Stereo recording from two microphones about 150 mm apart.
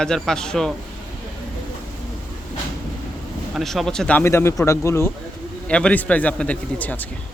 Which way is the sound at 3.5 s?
Centre (ahead or behind).